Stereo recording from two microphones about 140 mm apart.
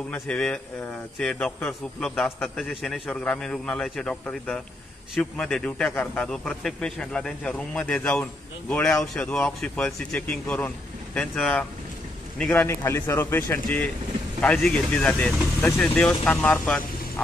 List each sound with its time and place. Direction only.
0.1 s a man's voice: 10° left (ahead or behind)